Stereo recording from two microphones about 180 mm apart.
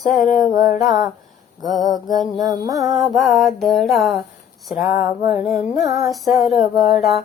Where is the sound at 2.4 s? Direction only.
20° right (ahead or behind).